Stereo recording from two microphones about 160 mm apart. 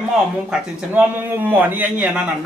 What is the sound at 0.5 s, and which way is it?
Speech, 10° right (ahead or behind).